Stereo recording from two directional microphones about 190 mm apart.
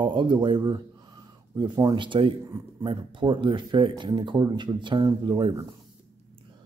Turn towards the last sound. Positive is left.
turn(degrees=-20)  # may be behind; listen again after turning